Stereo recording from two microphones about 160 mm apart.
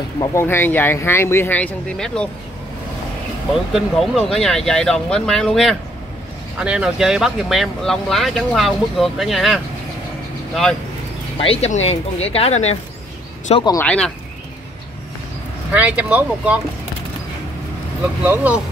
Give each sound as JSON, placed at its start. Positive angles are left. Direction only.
{"t": 0.2, "sound": "speech", "side_deg": 15}
{"t": 3.7, "sound": "speech", "side_deg": 0}
{"t": 11.3, "sound": "speech", "side_deg": 35}
{"t": 13.7, "sound": "speech", "side_deg": 10}
{"t": 15.7, "sound": "speech", "side_deg": -10}
{"t": 18.0, "sound": "speech", "side_deg": -10}